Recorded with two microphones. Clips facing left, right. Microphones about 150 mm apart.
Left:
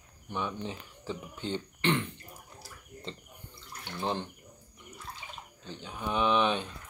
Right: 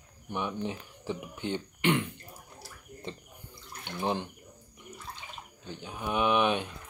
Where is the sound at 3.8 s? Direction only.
15° right (ahead or behind).